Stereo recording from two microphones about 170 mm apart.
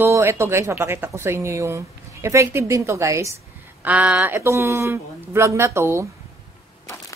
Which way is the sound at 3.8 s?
5° right (ahead or behind).